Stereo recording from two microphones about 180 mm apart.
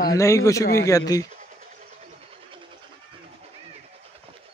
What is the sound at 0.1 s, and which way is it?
Speech, 15° left (ahead or behind).